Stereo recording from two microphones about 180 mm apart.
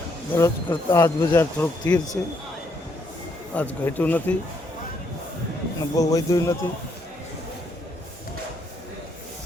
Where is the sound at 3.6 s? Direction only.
10° left (ahead or behind).